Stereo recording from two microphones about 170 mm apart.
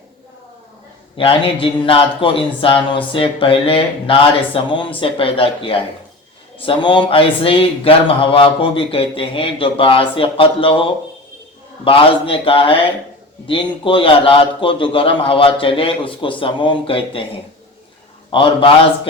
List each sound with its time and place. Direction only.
1.1 s speech: 30° left (ahead or behind)
11.9 s speech: 30° left (ahead or behind)
13.8 s speech: 30° left (ahead or behind)
18.3 s a man's voice: 30° left (ahead or behind)